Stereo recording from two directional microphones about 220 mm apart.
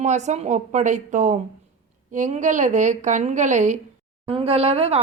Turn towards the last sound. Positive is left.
turn(degrees=-25)  # may be behind; listen again after turning